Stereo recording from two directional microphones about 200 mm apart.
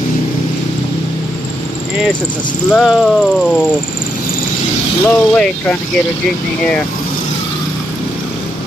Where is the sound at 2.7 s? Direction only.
Centre (ahead or behind).